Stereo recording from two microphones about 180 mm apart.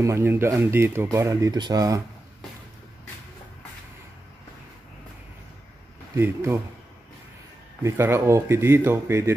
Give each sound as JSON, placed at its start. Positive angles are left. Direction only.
{"t": 0.0, "sound": "speech", "side_deg": -15}
{"t": 6.1, "sound": "speech", "side_deg": -15}
{"t": 7.8, "sound": "speech", "side_deg": -15}